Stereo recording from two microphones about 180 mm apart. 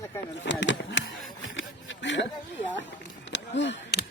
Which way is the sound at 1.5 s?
90° left.